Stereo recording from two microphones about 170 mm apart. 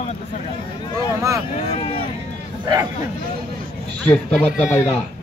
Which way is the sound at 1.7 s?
35° left (ahead or behind).